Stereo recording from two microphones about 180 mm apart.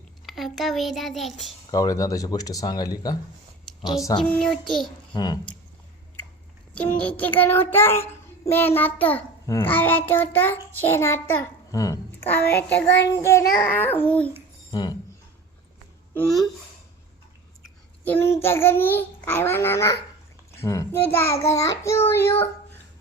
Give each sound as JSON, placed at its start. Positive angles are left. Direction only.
{"t": 0.3, "sound": "a child's voice", "side_deg": 0}
{"t": 1.7, "sound": "speech", "side_deg": 20}
{"t": 4.2, "sound": "a child's voice", "side_deg": 5}
{"t": 5.1, "sound": "speech", "side_deg": 20}
{"t": 6.7, "sound": "child singing", "side_deg": 10}
{"t": 11.7, "sound": "a woman's voice", "side_deg": 20}
{"t": 12.6, "sound": "child singing", "side_deg": 10}
{"t": 14.7, "sound": "a sound", "side_deg": 25}
{"t": 16.1, "sound": "a child's voice", "side_deg": 0}
{"t": 18.0, "sound": "child singing", "side_deg": 10}